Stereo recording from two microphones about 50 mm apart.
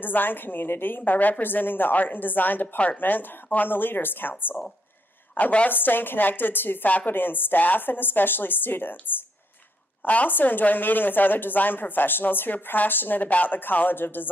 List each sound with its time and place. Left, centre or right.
0.0 s a woman's voice: left
5.3 s a woman's voice: left
5.7 s a woman's voice: left